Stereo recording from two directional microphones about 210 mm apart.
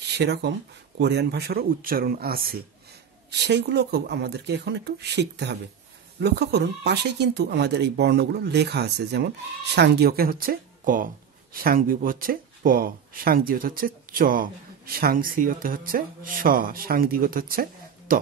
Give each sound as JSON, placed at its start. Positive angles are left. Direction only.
{"t": 0.0, "sound": "speech", "side_deg": -50}